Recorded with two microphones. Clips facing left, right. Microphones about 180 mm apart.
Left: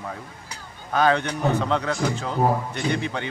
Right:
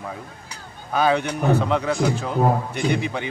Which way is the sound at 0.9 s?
10° right (ahead or behind).